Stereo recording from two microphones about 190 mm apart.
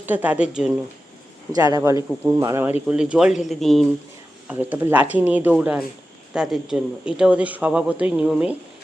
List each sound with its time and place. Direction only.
0.0 s speech: 10° right (ahead or behind)
1.5 s speech: 20° right (ahead or behind)
2.8 s a man's voice: 5° right (ahead or behind)